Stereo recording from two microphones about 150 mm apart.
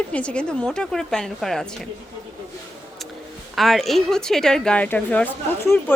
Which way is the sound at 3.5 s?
Centre (ahead or behind).